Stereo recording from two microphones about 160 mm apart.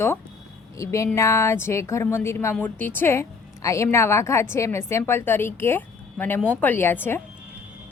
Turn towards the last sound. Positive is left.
turn(degrees=15)  # may be behind; listen again after turning